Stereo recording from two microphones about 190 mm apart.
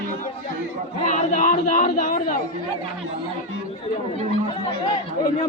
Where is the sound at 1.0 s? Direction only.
40° left (ahead or behind).